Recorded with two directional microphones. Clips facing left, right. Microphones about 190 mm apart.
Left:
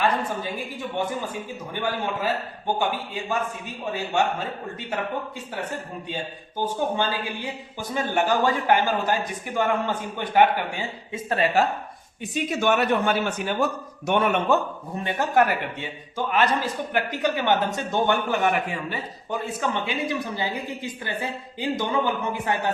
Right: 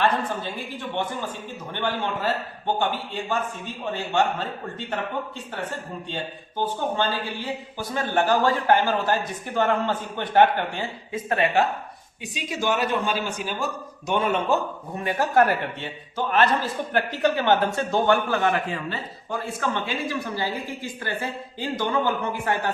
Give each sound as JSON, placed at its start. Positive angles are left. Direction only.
{"t": 0.0, "sound": "speech", "side_deg": 10}
{"t": 6.6, "sound": "speech", "side_deg": 15}
{"t": 11.1, "sound": "speech", "side_deg": 30}
{"t": 12.3, "sound": "speech", "side_deg": 55}
{"t": 15.0, "sound": "speech", "side_deg": 15}
{"t": 16.9, "sound": "a man's voice", "side_deg": 15}